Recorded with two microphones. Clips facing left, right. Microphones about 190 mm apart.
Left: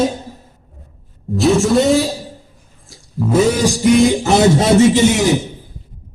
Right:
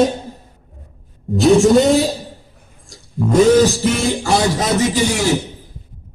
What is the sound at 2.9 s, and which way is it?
Music, 5° left (ahead or behind).